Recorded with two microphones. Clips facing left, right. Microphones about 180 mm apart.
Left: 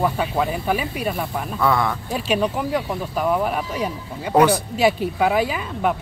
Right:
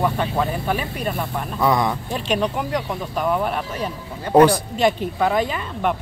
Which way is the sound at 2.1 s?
5° left (ahead or behind).